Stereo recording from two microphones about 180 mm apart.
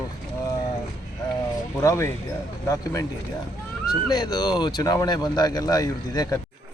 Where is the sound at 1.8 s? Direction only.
15° left (ahead or behind).